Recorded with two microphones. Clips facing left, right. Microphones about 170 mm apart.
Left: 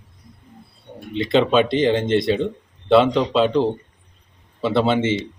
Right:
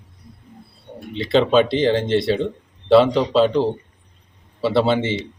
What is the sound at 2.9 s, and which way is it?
Speech, centre (ahead or behind).